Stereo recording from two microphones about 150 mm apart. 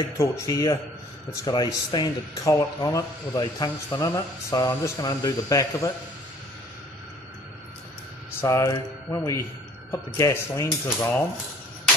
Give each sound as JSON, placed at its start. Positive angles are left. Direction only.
{"t": 0.2, "sound": "speech", "side_deg": 25}
{"t": 8.4, "sound": "speech", "side_deg": 20}